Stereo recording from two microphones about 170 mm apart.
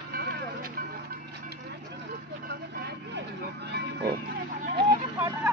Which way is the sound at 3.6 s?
75° right (ahead or behind).